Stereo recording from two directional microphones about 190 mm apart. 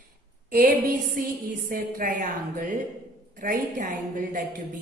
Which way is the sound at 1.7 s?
45° right (ahead or behind).